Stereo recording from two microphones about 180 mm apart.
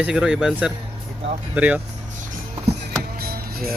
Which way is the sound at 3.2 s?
60° right (ahead or behind).